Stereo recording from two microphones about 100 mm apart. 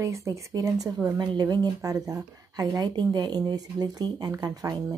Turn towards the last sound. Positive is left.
turn(degrees=-40)  # may be behind; listen again after turning